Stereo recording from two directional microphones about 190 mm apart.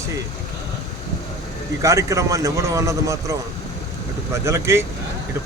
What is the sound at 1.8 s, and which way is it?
A man's voice, 15° right (ahead or behind).